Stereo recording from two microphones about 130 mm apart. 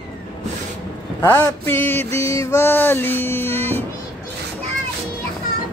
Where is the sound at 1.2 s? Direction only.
20° left (ahead or behind).